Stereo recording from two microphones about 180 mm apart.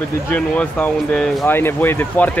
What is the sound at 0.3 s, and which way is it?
Speech, 10° left (ahead or behind).